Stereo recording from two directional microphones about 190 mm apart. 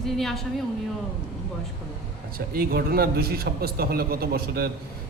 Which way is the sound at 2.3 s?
50° right (ahead or behind).